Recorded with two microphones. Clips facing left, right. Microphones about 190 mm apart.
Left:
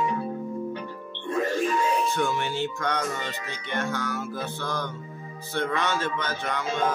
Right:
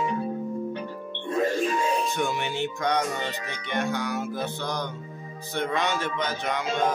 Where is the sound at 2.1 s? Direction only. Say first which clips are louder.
Left 1 dB; 15° right (ahead or behind).